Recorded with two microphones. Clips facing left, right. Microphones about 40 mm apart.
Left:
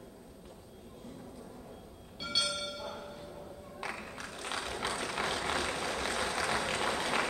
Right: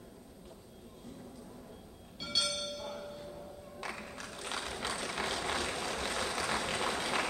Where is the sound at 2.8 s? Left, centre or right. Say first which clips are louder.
Even; centre.